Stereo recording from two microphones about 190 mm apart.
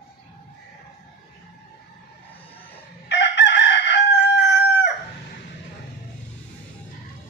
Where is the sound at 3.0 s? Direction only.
65° left (ahead or behind).